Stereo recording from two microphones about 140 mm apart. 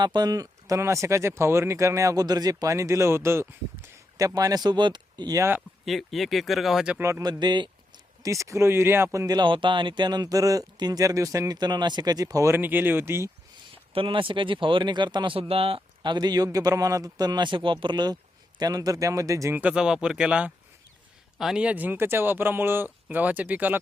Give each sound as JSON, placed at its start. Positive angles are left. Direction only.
{"t": 0.0, "sound": "speech", "side_deg": -30}
{"t": 5.8, "sound": "speech", "side_deg": 0}
{"t": 7.0, "sound": "speech", "side_deg": -25}
{"t": 13.9, "sound": "speech", "side_deg": -40}
{"t": 16.1, "sound": "speech", "side_deg": -30}